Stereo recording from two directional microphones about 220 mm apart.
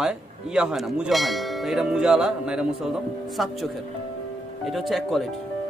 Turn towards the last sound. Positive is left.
turn(degrees=0)  # may be behind; listen again after turning